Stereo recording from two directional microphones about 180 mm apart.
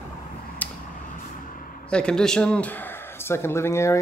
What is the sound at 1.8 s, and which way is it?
Speech, 5° left (ahead or behind).